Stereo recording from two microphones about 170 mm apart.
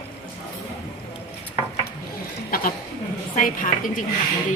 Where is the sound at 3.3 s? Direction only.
50° left (ahead or behind).